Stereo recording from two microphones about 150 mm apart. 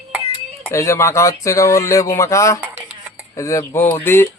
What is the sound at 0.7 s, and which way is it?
A man's voice, 20° left (ahead or behind).